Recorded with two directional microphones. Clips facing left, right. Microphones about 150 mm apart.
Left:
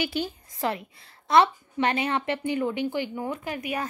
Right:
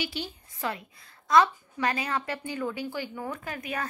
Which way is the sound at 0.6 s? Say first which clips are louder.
Left 5 dB; 30° left (ahead or behind).